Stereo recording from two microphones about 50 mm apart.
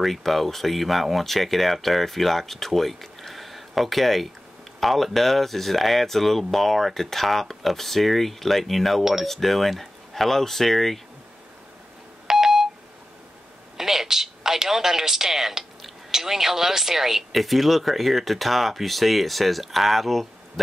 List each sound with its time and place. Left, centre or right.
0.0 s a man's voice: centre
12.3 s telephone dialing: centre
13.7 s a man's voice: centre